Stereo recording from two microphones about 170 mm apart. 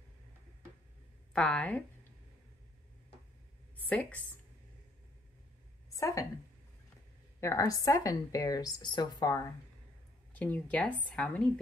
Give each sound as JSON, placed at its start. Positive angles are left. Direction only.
{"t": 1.3, "sound": "a woman's voice", "side_deg": 5}
{"t": 3.7, "sound": "a sound", "side_deg": 10}
{"t": 5.9, "sound": "a woman's voice", "side_deg": 20}
{"t": 7.3, "sound": "a woman's voice", "side_deg": 15}
{"t": 10.3, "sound": "a woman's voice", "side_deg": 10}